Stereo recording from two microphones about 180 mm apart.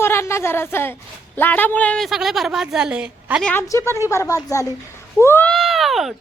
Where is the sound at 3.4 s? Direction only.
10° left (ahead or behind).